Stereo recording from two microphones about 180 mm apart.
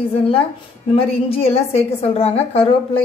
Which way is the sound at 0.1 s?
30° left (ahead or behind).